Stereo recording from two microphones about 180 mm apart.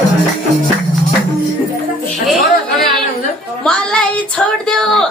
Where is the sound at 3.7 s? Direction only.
5° left (ahead or behind).